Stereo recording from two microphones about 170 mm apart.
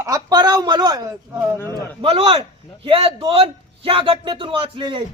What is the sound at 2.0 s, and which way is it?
A man's voice, 35° right (ahead or behind).